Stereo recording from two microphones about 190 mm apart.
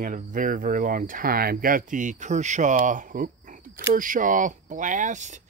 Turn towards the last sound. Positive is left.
turn(degrees=-40)  # may be behind; listen again after turning